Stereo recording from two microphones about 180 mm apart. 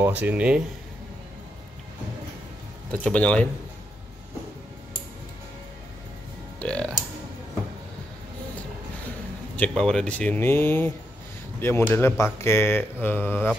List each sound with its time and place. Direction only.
0.0 s speech: 10° right (ahead or behind)
2.9 s speech: 5° left (ahead or behind)
6.6 s speech: 5° left (ahead or behind)
9.6 s speech: 5° left (ahead or behind)